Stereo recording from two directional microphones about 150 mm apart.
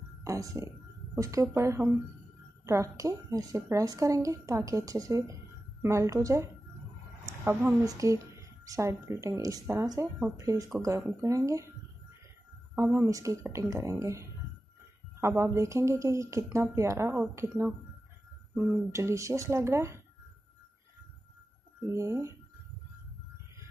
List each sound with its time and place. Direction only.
0.2 s a woman's voice: 20° right (ahead or behind)
12.7 s a woman's voice: 15° right (ahead or behind)
18.9 s a woman's voice: 20° right (ahead or behind)
21.9 s a woman's voice: 20° right (ahead or behind)